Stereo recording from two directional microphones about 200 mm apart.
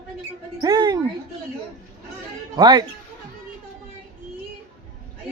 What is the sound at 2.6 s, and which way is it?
Speech, 20° right (ahead or behind).